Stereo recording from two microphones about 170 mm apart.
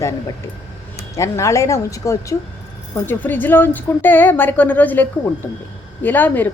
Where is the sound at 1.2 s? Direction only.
15° left (ahead or behind).